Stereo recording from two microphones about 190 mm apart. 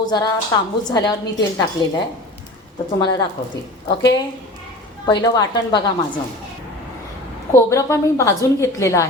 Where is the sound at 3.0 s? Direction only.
20° left (ahead or behind).